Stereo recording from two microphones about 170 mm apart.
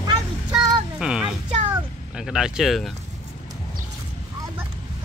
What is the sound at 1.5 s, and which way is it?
Speech, 30° right (ahead or behind).